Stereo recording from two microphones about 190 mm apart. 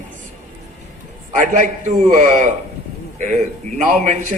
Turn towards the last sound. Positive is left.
turn(degrees=-40)  # may be behind; listen again after turning